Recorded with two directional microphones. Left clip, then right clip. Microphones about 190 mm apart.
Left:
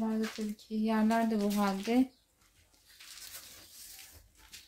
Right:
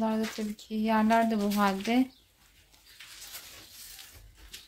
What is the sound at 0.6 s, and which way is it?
Speech, centre (ahead or behind).